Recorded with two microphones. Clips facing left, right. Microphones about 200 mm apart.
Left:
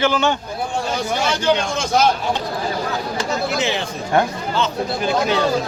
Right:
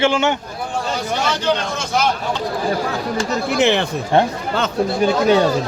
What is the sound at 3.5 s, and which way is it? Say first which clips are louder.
Speech: right 6 dB; 60° right (ahead or behind).